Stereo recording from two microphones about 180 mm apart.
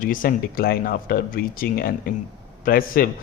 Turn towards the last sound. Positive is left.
turn(degrees=55)  # may be behind; listen again after turning